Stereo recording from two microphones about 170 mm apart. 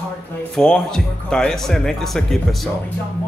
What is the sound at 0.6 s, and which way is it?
Speech, 5° left (ahead or behind).